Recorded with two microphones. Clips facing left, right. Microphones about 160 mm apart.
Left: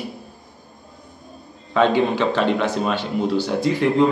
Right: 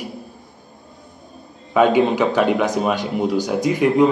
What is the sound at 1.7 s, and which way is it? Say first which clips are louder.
A man's voice: right 3 dB; 15° right (ahead or behind).